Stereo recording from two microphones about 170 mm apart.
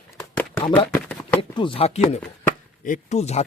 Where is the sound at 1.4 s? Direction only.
30° left (ahead or behind).